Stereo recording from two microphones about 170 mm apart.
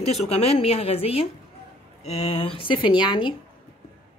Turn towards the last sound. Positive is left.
turn(degrees=25)  # may be behind; listen again after turning